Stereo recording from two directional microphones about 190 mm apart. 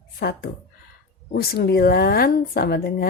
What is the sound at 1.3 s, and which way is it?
Speech, 55° left (ahead or behind).